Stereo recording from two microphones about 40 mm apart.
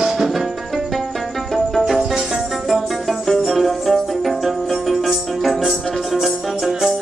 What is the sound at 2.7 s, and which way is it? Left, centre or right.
Music, centre.